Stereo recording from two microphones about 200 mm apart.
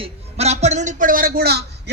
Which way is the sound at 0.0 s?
30° right (ahead or behind).